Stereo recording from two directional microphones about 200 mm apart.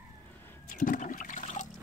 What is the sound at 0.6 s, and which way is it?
Toilet flush, 40° left (ahead or behind).